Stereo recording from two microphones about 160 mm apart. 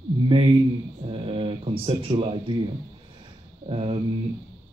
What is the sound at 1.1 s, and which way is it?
Speech, 35° right (ahead or behind).